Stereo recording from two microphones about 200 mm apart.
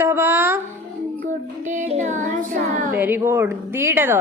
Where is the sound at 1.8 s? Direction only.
35° right (ahead or behind).